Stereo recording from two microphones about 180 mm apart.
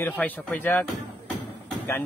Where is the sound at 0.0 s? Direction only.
10° left (ahead or behind).